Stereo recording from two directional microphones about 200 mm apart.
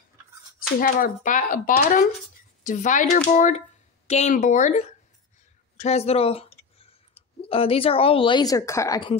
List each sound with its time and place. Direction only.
0.6 s speech: 45° left (ahead or behind); by 6.4 s 30° left (ahead or behind)
7.4 s a woman's voice: 30° left (ahead or behind)